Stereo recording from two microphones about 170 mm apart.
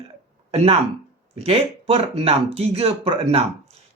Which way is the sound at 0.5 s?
35° right (ahead or behind).